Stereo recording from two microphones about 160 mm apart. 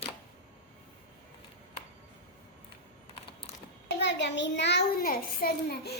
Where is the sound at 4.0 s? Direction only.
90° left.